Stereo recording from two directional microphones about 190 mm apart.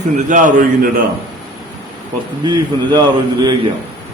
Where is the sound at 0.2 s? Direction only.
40° right (ahead or behind).